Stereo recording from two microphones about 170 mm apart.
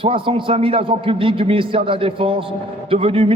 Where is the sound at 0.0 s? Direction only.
30° right (ahead or behind).